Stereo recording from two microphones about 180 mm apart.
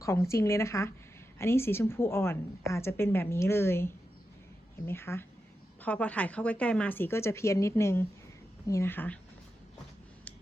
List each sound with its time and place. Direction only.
0.0 s a woman's voice: 15° left (ahead or behind)